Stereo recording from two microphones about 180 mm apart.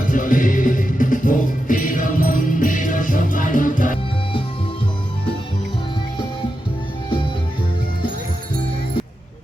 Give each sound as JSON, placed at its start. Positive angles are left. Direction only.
{"t": 0.1, "sound": "music", "side_deg": 50}